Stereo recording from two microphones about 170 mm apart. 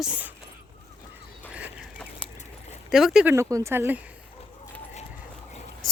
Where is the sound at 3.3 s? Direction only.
15° right (ahead or behind).